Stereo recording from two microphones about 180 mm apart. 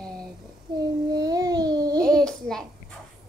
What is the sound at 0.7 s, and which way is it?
Child singing, 25° right (ahead or behind).